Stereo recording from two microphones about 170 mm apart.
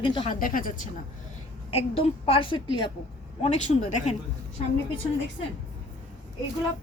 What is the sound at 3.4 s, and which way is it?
Speech, 40° left (ahead or behind).